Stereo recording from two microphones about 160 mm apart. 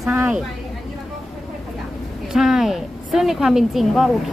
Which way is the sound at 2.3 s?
5° right (ahead or behind).